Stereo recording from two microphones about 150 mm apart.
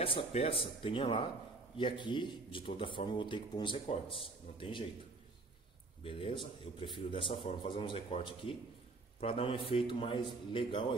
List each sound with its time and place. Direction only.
0.0 s speech: 40° left (ahead or behind)
6.0 s speech: 35° left (ahead or behind)